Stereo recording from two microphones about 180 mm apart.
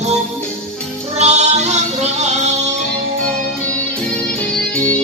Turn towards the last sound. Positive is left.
turn(degrees=10)  # may be behind; listen again after turning